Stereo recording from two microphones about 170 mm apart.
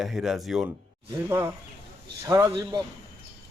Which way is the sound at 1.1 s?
15° right (ahead or behind).